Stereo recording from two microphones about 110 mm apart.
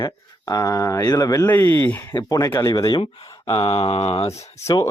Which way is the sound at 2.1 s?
35° left (ahead or behind).